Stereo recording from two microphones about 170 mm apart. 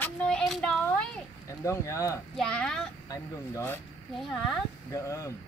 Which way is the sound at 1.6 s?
15° left (ahead or behind).